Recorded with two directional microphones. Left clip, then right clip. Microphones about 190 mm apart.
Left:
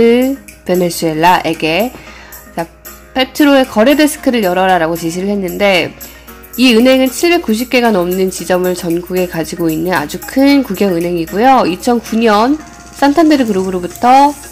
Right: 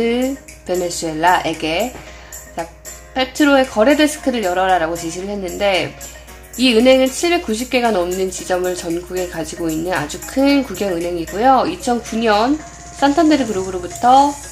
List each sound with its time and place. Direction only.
0.0 s speech: 30° left (ahead or behind)
3.2 s speech: 25° left (ahead or behind)